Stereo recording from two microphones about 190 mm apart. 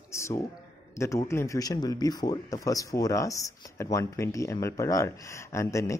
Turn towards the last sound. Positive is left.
turn(degrees=15)  # may be behind; listen again after turning